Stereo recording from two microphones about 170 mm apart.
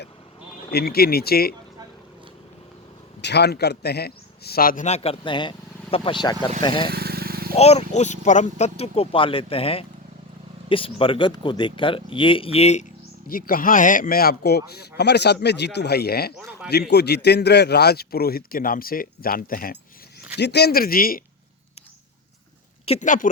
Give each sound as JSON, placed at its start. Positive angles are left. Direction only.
{"t": 0.7, "sound": "a man's voice", "side_deg": 70}
{"t": 3.2, "sound": "a man's voice", "side_deg": 85}
{"t": 6.9, "sound": "vehicle", "side_deg": -65}
{"t": 7.5, "sound": "speech", "side_deg": 40}
{"t": 13.2, "sound": "a man's voice", "side_deg": 55}
{"t": 20.3, "sound": "a man's voice", "side_deg": 80}
{"t": 22.9, "sound": "speech", "side_deg": 45}